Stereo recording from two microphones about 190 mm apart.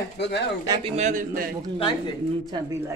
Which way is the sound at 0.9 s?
40° right (ahead or behind).